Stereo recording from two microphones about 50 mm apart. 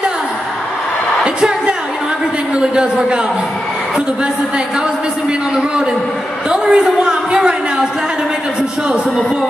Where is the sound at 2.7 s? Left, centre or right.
Centre.